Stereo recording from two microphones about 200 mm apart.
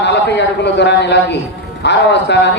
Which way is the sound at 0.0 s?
60° left (ahead or behind).